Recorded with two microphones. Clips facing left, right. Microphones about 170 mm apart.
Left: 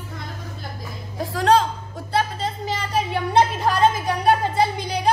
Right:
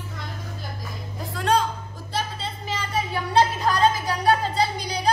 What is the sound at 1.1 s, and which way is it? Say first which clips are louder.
Music: left 5 dB; 90° left.